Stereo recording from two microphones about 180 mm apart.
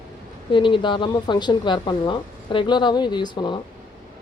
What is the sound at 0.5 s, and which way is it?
Speech, 25° left (ahead or behind).